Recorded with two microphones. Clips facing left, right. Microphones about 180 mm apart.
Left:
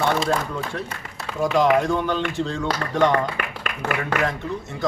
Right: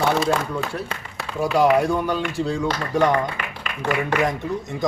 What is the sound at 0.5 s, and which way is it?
Speech, 10° right (ahead or behind).